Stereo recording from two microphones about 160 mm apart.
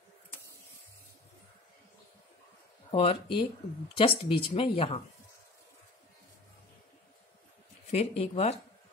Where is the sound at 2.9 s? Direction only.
40° left (ahead or behind).